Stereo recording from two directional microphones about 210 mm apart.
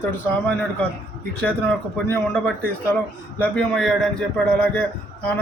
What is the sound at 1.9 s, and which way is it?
A man's voice, centre (ahead or behind).